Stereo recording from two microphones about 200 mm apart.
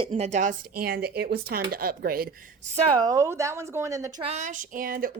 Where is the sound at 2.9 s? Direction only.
15° right (ahead or behind).